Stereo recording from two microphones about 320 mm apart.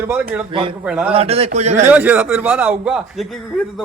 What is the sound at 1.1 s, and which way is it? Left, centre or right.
Speech, centre.